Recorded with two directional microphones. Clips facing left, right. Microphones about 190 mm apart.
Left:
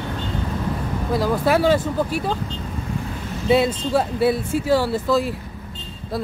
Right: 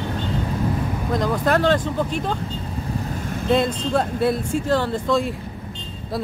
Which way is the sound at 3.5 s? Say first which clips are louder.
Left 2 dB; 5° left (ahead or behind).